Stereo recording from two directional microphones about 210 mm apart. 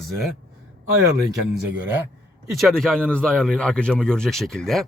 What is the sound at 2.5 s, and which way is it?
Speech, centre (ahead or behind).